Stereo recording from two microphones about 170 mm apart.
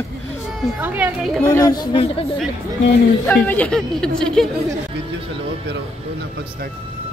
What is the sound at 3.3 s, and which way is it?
Speech, 10° left (ahead or behind).